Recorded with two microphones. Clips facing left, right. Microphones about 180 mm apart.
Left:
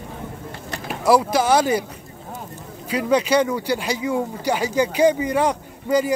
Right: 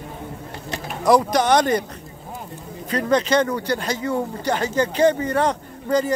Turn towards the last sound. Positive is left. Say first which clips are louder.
# left 1 dB
turn(degrees=10)  # may be behind; listen again after turning